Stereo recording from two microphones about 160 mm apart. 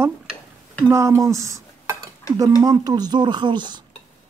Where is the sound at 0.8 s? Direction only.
15° right (ahead or behind).